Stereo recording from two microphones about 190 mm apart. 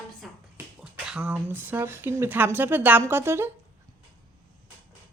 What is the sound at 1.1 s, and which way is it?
Speech, 5° right (ahead or behind).